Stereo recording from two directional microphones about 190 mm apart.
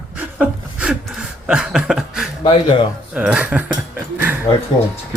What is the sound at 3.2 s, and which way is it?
Speech, 5° right (ahead or behind).